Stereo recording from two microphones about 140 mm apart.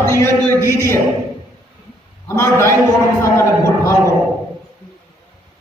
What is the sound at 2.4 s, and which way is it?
A man's voice, 20° left (ahead or behind).